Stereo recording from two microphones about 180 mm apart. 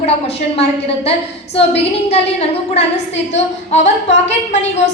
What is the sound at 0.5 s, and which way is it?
A woman's voice, 35° left (ahead or behind).